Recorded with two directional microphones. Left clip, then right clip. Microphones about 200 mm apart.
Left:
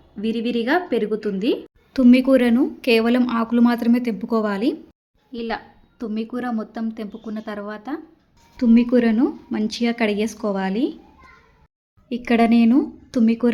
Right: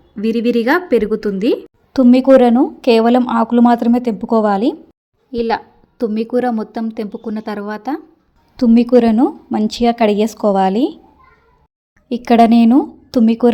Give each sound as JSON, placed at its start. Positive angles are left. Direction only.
{"t": 0.2, "sound": "a woman's voice", "side_deg": -30}
{"t": 12.0, "sound": "a woman's voice", "side_deg": -35}